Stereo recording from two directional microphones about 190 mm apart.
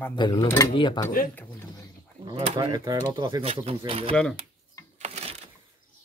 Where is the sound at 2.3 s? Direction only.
20° right (ahead or behind).